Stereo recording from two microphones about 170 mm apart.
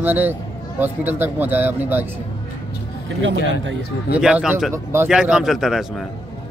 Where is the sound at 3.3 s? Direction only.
80° left.